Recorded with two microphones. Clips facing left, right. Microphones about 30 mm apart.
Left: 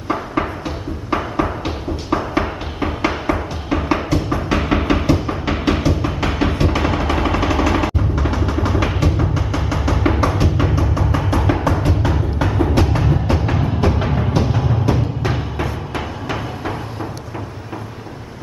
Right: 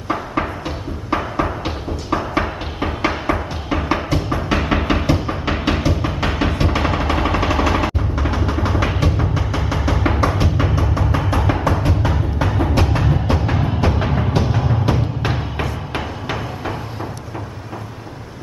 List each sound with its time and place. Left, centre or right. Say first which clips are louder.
0.1 s music: left 1 dB; centre